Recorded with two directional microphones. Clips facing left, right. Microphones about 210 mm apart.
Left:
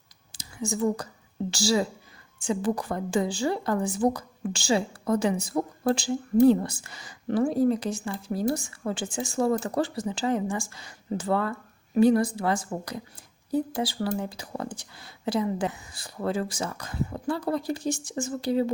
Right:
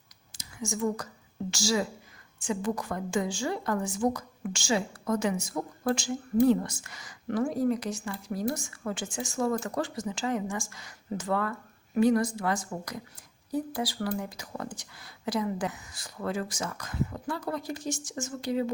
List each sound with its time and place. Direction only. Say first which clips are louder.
0.3 s a woman's voice: left 4 dB; 30° left (ahead or behind)